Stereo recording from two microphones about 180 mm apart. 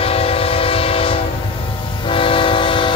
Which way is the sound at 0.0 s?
30° left (ahead or behind).